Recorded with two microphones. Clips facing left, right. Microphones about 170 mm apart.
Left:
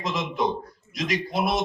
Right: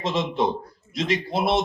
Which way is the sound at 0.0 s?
30° right (ahead or behind).